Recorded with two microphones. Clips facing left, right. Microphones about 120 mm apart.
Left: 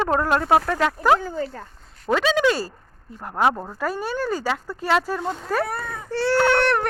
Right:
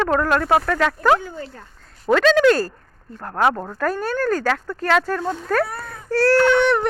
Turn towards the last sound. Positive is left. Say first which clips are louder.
# right 3 dB
turn(degrees=0)  # may be behind; listen again after turning